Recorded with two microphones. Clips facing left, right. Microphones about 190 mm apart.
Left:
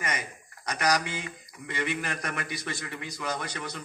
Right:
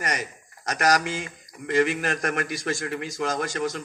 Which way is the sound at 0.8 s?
90° right.